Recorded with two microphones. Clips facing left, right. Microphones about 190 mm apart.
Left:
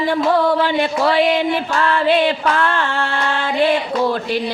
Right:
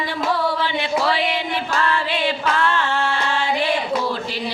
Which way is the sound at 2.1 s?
50° left (ahead or behind).